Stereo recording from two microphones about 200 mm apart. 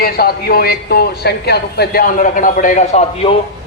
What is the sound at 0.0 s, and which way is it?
A man's voice, 50° left (ahead or behind).